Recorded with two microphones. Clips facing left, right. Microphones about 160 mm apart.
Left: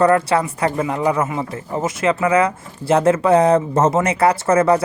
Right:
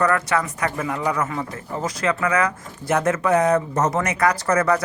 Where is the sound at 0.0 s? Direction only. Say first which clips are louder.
Left 6 dB; 30° left (ahead or behind).